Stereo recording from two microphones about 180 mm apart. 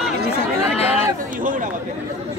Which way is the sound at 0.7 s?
35° left (ahead or behind).